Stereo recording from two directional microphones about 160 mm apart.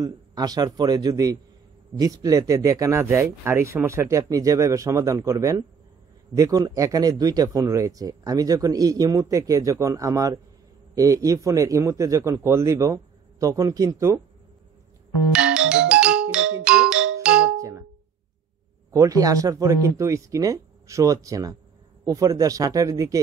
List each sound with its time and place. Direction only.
0.0 s speech: 25° right (ahead or behind)
15.3 s music: 5° right (ahead or behind)
17.6 s clang: 20° right (ahead or behind)
18.9 s speech: 20° right (ahead or behind)